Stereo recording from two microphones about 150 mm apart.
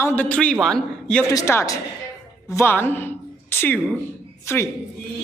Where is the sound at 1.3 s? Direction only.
20° left (ahead or behind).